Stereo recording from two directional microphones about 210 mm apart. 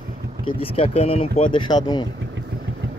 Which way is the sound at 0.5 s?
25° left (ahead or behind).